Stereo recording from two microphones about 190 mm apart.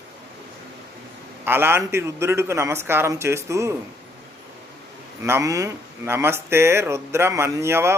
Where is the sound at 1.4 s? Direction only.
10° right (ahead or behind).